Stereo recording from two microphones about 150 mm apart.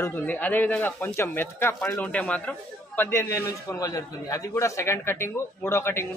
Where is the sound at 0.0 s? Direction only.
10° left (ahead or behind).